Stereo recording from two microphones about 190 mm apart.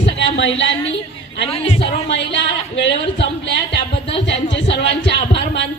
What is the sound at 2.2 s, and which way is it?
A woman's voice, 70° left (ahead or behind).